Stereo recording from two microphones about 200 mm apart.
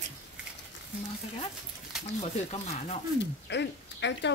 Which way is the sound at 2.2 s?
35° left (ahead or behind).